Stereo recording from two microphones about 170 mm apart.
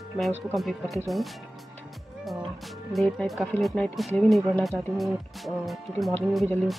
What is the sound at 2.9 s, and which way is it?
Speech, centre (ahead or behind).